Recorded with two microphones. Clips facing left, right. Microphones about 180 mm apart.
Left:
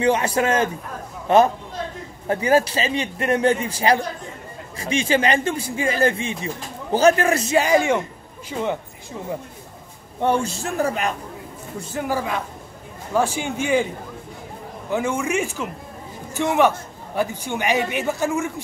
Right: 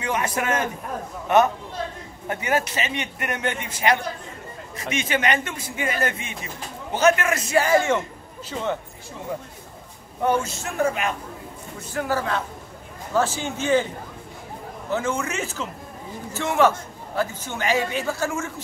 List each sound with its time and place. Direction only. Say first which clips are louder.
0.0 s a man's voice: left 6 dB; 30° left (ahead or behind)
7.5 s a man's voice: even; 15° left (ahead or behind)
10.2 s a man's voice: left 2 dB; 30° left (ahead or behind)
12.1 s a man's voice: even; 15° left (ahead or behind)
14.9 s a man's voice: left 3 dB; 15° left (ahead or behind)